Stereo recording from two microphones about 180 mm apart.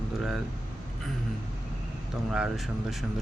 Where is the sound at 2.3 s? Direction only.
Centre (ahead or behind).